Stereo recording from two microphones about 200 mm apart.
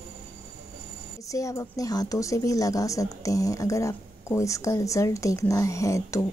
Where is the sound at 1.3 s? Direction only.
15° left (ahead or behind).